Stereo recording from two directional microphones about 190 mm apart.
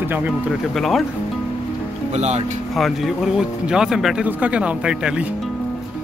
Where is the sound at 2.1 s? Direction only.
35° right (ahead or behind).